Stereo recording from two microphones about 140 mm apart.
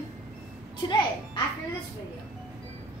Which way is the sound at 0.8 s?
35° left (ahead or behind).